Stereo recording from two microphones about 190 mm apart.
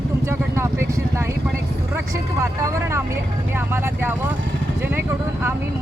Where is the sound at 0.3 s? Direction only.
15° right (ahead or behind).